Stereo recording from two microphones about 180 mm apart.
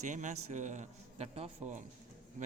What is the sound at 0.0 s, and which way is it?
A man's voice, 45° right (ahead or behind).